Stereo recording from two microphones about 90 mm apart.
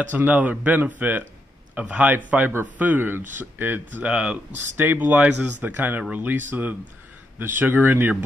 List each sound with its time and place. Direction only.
0.0 s speech: 20° right (ahead or behind)
4.6 s speech: 20° right (ahead or behind)